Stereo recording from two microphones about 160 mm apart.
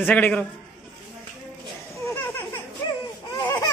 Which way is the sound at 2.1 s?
15° left (ahead or behind).